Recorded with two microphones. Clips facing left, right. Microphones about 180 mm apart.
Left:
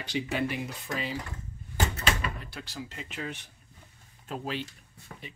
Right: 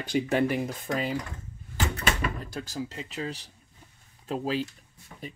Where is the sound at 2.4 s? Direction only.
40° right (ahead or behind).